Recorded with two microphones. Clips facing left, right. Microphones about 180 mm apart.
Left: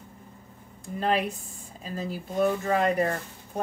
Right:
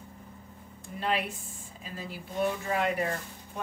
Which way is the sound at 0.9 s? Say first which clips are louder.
Left 5 dB; 40° left (ahead or behind).